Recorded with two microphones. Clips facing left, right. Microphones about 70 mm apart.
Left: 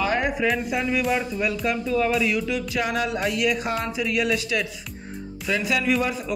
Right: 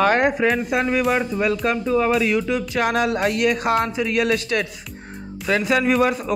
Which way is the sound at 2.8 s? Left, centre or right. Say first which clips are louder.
Right 7 dB; right.